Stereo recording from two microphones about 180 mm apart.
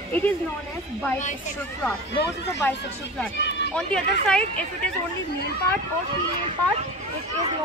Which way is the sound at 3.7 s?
5° left (ahead or behind).